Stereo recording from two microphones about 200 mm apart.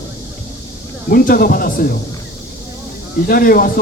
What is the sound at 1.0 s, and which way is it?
Speech, 45° left (ahead or behind).